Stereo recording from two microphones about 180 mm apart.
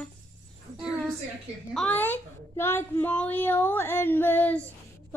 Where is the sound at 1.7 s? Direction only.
5° left (ahead or behind).